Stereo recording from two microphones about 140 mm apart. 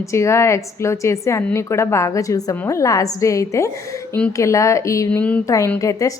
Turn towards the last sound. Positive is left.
turn(degrees=20)  # may be behind; listen again after turning